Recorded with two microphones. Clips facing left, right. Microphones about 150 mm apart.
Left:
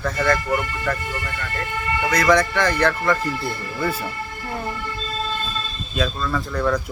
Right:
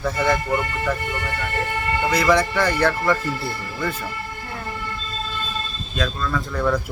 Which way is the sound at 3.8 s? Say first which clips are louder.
Left 2 dB; 10° left (ahead or behind).